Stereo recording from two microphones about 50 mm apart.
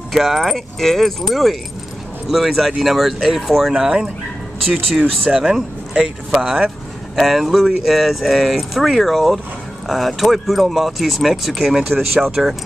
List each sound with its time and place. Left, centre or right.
0.1 s speech: centre
3.7 s speech: centre
4.6 s speech: centre
5.3 s speech: centre